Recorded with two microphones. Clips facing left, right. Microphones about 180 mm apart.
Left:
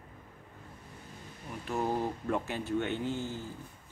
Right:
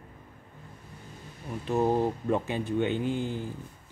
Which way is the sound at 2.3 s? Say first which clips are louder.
Right 4 dB; 20° right (ahead or behind).